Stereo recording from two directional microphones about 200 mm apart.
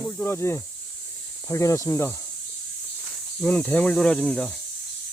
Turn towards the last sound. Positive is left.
turn(degrees=5)  # may be behind; listen again after turning